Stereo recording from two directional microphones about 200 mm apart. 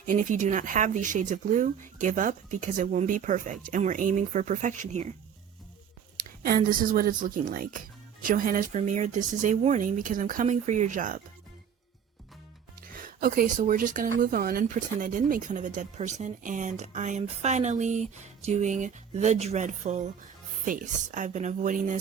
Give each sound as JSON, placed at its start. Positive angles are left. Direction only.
{"t": 0.0, "sound": "speech", "side_deg": -40}
{"t": 6.1, "sound": "speech", "side_deg": -45}
{"t": 12.8, "sound": "speech", "side_deg": -45}